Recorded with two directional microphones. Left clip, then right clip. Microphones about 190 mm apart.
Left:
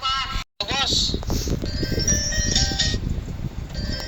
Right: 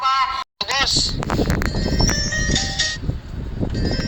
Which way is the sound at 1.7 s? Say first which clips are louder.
Even; 25° right (ahead or behind).